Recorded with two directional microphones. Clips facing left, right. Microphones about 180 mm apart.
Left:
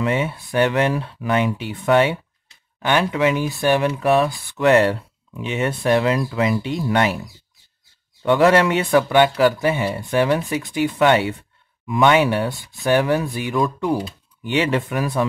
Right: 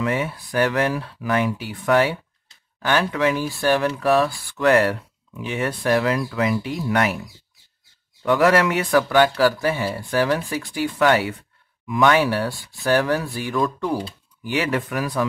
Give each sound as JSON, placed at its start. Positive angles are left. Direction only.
{"t": 0.0, "sound": "speech", "side_deg": 25}
{"t": 8.2, "sound": "speech", "side_deg": 25}
{"t": 14.5, "sound": "speech", "side_deg": 25}